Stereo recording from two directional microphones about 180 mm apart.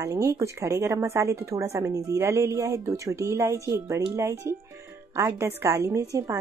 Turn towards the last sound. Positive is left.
turn(degrees=-15)  # may be behind; listen again after turning